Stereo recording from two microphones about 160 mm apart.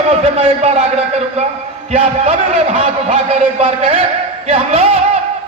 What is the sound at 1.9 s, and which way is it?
A man's voice, 40° right (ahead or behind).